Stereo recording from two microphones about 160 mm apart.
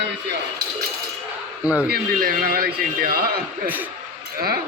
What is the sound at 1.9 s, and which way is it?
Speech, 65° right (ahead or behind).